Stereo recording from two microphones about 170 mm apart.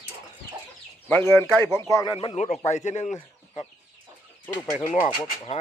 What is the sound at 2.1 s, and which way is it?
Speech, 30° left (ahead or behind).